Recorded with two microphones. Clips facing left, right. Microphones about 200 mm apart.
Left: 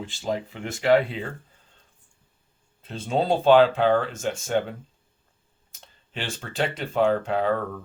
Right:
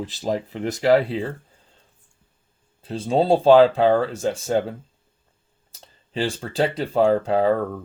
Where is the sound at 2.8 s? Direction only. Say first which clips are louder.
Right 5 dB; 35° right (ahead or behind).